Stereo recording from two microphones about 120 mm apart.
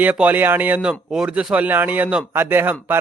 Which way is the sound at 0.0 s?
15° right (ahead or behind).